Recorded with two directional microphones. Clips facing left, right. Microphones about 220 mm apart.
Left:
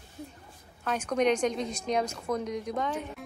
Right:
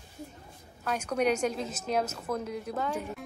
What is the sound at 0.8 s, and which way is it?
A woman's voice, 10° right (ahead or behind).